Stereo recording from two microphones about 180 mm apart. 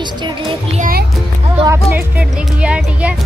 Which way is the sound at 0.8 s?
55° right (ahead or behind).